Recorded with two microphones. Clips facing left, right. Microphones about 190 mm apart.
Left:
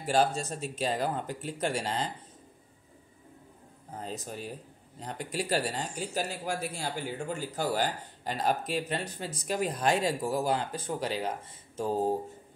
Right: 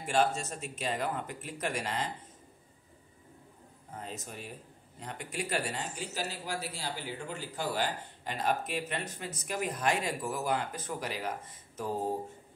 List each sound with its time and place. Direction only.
0.0 s speech: 35° left (ahead or behind)
4.0 s speech: 35° left (ahead or behind)
6.1 s speech: 50° left (ahead or behind); by 11.9 s 30° left (ahead or behind)